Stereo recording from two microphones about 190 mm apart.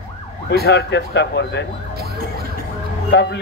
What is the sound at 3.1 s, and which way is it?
Speech, 65° left (ahead or behind).